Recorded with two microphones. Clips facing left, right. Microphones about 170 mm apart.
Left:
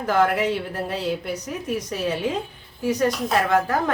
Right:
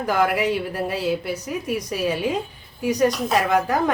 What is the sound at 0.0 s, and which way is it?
A woman's voice, 10° right (ahead or behind).